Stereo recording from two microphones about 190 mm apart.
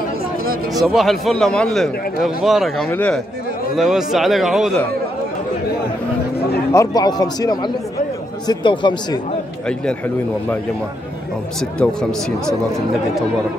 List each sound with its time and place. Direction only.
0.8 s a man's voice: centre (ahead or behind)
6.7 s speech: 20° left (ahead or behind)
11.8 s a man's voice: 5° left (ahead or behind)